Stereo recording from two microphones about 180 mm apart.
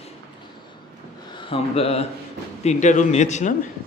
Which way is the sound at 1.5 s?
35° left (ahead or behind).